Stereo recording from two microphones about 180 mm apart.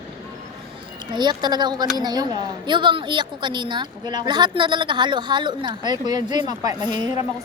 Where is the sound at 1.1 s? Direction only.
25° right (ahead or behind).